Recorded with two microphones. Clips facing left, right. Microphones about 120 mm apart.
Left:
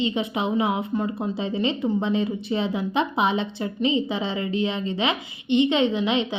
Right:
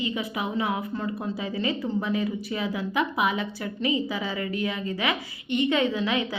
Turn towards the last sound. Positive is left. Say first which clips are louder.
# left 3 dB
turn(degrees=20)  # may be behind; listen again after turning